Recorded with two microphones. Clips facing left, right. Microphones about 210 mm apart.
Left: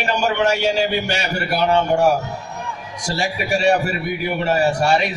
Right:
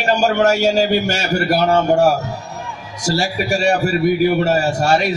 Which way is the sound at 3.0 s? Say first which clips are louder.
Right 4 dB; 45° right (ahead or behind).